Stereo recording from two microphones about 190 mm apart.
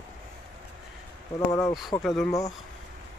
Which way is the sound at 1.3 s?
15° left (ahead or behind).